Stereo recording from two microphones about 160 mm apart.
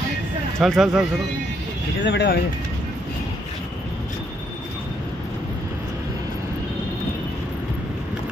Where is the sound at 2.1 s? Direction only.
90° left.